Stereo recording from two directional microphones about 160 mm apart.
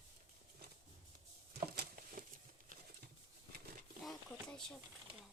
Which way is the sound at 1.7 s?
65° right (ahead or behind).